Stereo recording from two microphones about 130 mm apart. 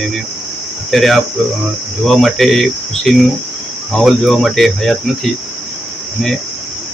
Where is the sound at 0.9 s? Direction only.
Centre (ahead or behind).